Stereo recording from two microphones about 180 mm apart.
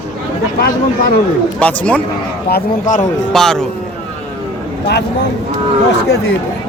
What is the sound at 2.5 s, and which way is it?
Speech, 45° left (ahead or behind).